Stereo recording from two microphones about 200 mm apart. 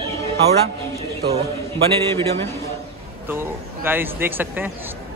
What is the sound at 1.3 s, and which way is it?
Speech, 30° right (ahead or behind).